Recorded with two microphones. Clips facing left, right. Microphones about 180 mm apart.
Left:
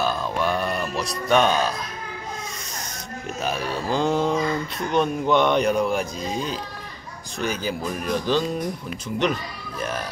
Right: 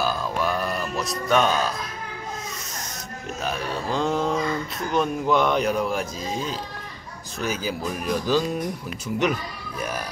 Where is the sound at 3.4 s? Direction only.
Centre (ahead or behind).